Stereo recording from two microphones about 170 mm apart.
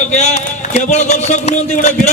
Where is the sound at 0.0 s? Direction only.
40° left (ahead or behind).